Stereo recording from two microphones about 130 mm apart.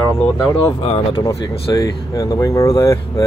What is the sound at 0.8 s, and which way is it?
Speech, 45° left (ahead or behind).